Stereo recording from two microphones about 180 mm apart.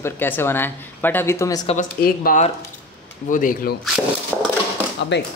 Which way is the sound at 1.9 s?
55° left (ahead or behind).